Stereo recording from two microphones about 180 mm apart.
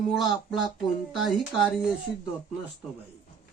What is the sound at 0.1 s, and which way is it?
Speech, centre (ahead or behind).